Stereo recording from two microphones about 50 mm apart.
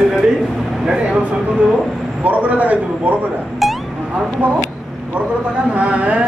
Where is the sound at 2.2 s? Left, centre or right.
Right.